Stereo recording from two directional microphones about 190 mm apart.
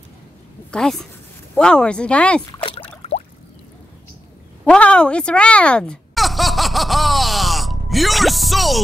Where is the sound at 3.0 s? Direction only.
35° left (ahead or behind).